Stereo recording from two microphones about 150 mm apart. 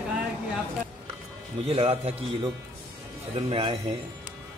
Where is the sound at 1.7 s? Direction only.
40° right (ahead or behind).